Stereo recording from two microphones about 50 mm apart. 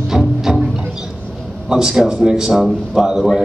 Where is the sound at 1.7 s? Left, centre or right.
Centre.